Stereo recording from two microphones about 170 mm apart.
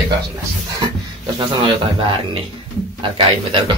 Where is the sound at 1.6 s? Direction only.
35° right (ahead or behind).